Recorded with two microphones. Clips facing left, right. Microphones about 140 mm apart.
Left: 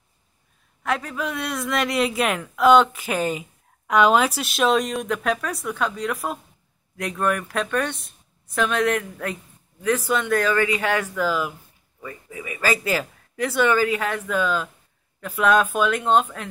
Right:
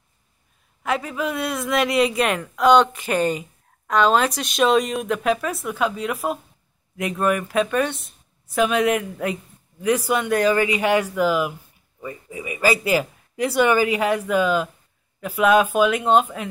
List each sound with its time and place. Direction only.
0.8 s a man's voice: centre (ahead or behind)